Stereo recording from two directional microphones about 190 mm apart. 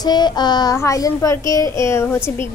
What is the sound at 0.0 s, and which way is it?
A child's voice, 20° left (ahead or behind).